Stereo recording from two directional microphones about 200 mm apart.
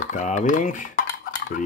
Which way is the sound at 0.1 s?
40° left (ahead or behind).